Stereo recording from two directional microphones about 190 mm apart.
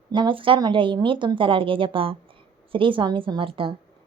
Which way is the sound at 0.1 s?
25° right (ahead or behind).